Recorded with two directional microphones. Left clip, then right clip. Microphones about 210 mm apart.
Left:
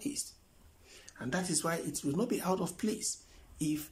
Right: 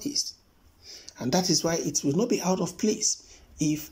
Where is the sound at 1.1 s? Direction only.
15° right (ahead or behind).